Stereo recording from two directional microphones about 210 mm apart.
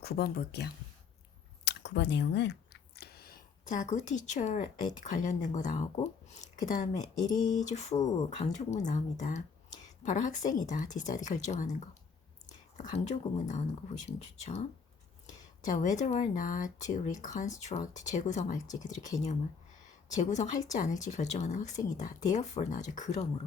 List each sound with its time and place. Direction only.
0.0 s speech: 45° left (ahead or behind)
1.6 s a sound: 55° left (ahead or behind); by 4.9 s 35° left (ahead or behind)
5.0 s speech: 35° left (ahead or behind)
7.2 s a sound: 20° left (ahead or behind)
7.7 s speech: 30° left (ahead or behind)
12.7 s speech: 30° left (ahead or behind)
20.3 s speech: 35° left (ahead or behind)